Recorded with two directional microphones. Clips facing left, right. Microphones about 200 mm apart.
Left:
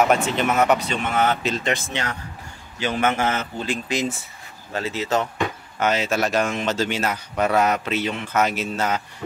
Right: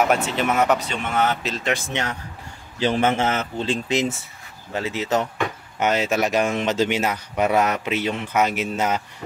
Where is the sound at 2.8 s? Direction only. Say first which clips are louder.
Right 2 dB; 30° right (ahead or behind).